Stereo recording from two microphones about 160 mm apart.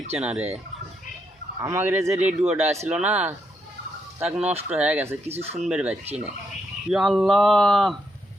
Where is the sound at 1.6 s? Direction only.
15° right (ahead or behind).